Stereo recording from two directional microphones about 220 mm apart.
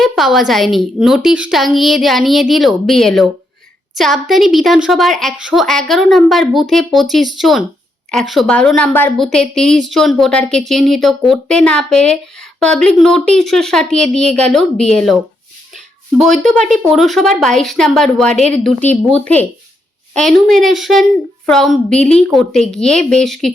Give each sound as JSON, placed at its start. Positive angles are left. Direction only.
{"t": 0.0, "sound": "a woman's voice", "side_deg": 0}
{"t": 16.2, "sound": "a woman's voice", "side_deg": 0}
{"t": 18.3, "sound": "a woman's voice", "side_deg": -30}
{"t": 18.6, "sound": "a woman's voice", "side_deg": 5}